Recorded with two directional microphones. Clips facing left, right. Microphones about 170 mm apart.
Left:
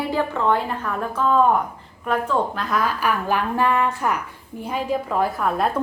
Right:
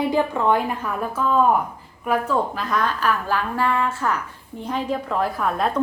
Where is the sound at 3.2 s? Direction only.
15° left (ahead or behind); by 5.7 s centre (ahead or behind).